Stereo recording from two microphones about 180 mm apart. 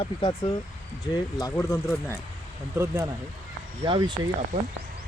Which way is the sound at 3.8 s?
25° right (ahead or behind).